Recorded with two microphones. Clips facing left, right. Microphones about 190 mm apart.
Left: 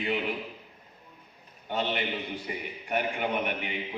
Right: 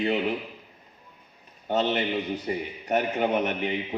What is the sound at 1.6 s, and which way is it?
A man's voice, 40° right (ahead or behind).